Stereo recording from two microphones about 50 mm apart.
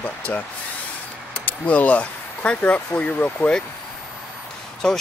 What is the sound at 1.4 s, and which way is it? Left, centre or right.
Speech, left.